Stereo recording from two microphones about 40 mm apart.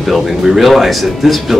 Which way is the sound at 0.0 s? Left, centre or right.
Centre.